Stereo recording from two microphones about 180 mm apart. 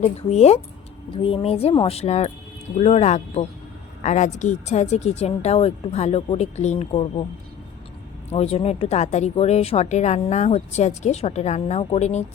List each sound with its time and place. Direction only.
0.0 s speech: 35° left (ahead or behind)
8.3 s speech: 35° left (ahead or behind)